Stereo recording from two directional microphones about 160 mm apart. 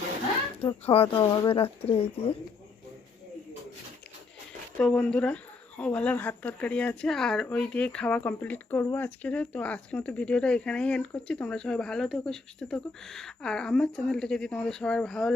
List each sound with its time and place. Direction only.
0.9 s speech: 35° left (ahead or behind)
4.8 s speech: 5° left (ahead or behind)